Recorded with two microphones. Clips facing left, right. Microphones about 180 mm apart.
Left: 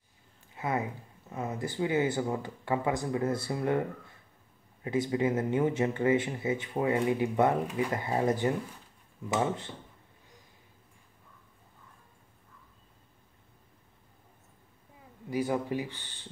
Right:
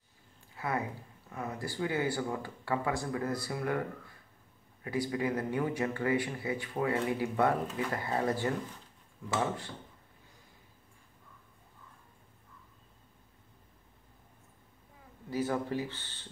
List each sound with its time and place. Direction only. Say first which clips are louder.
0.6 s speech: left 3 dB; 20° left (ahead or behind)
4.8 s speech: left 4 dB; 20° left (ahead or behind)
15.2 s speech: left 2 dB; 15° left (ahead or behind)